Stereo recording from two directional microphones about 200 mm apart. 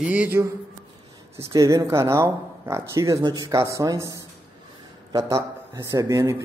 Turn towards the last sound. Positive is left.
turn(degrees=-15)  # may be behind; listen again after turning